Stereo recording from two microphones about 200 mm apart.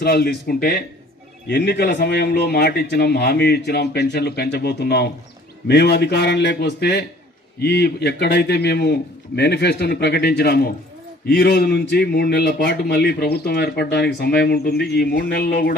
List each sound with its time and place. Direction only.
0.0 s a man's voice: 55° left (ahead or behind)